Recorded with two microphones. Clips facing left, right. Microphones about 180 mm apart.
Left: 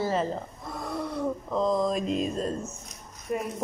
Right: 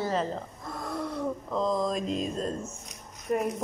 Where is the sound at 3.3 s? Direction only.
50° right (ahead or behind).